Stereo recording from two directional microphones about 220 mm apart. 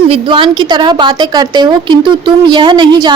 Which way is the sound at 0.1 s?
25° right (ahead or behind).